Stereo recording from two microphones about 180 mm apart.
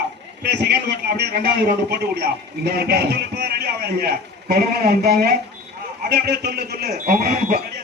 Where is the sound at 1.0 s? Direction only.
65° right (ahead or behind).